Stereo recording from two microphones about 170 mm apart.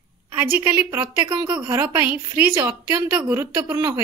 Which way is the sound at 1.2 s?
25° right (ahead or behind).